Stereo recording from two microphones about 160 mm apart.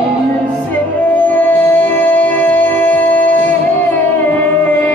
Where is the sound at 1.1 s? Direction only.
10° left (ahead or behind).